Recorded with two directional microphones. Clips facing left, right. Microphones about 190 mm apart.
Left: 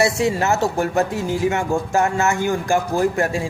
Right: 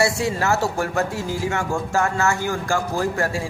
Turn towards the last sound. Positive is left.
turn(degrees=20)  # may be behind; listen again after turning